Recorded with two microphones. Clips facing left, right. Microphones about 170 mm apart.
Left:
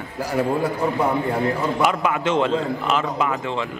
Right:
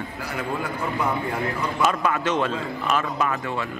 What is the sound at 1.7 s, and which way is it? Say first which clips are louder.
A man's voice: left 2 dB; 15° left (ahead or behind).